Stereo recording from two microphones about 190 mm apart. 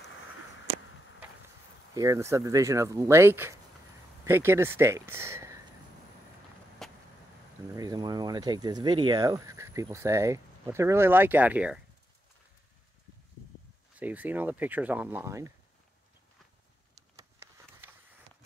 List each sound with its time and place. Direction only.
2.0 s speech: 15° right (ahead or behind)
6.8 s vehicle: centre (ahead or behind)
7.7 s speech: 20° right (ahead or behind)
13.9 s speech: 10° right (ahead or behind)
16.9 s a sound: 15° right (ahead or behind)